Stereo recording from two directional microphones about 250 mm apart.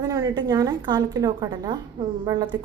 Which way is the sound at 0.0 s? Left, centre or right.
Centre.